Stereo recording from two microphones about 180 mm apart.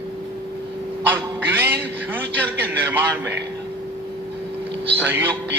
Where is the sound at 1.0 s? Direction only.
10° right (ahead or behind).